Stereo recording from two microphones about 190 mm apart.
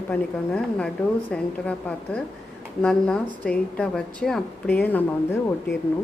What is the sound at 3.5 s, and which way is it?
A woman's voice, 5° left (ahead or behind).